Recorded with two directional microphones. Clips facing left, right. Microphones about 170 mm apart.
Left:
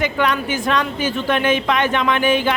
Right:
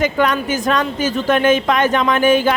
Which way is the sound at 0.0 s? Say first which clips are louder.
Right 3 dB; 45° right (ahead or behind).